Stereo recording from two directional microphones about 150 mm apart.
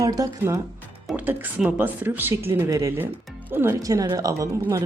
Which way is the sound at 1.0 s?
10° right (ahead or behind).